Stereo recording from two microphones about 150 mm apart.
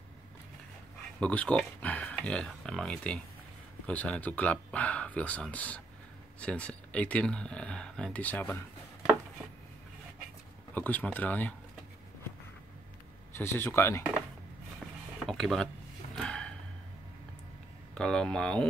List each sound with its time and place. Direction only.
1.2 s speech: 10° left (ahead or behind)
10.7 s speech: 10° left (ahead or behind)
13.4 s speech: 15° left (ahead or behind)
15.2 s speech: centre (ahead or behind)
16.2 s a sound: 5° left (ahead or behind)
17.9 s speech: 5° left (ahead or behind)